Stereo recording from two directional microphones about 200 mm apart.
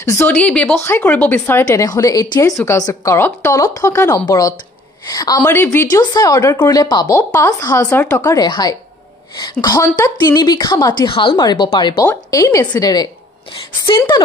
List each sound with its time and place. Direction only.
0.0 s a woman's voice: 15° left (ahead or behind)